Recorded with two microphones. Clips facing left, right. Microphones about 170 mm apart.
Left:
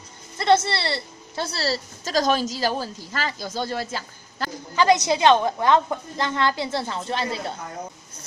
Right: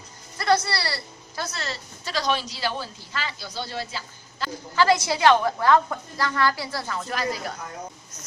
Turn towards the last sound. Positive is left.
turn(degrees=25)  # may be behind; listen again after turning